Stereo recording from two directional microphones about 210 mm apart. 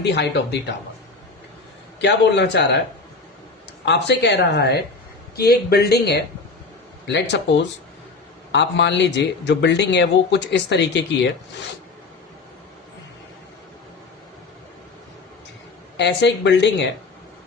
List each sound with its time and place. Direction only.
0.0 s speech: 55° left (ahead or behind)
2.0 s speech: 55° left (ahead or behind)
3.8 s speech: 55° left (ahead or behind)
8.5 s speech: 60° left (ahead or behind)
16.0 s speech: 55° left (ahead or behind)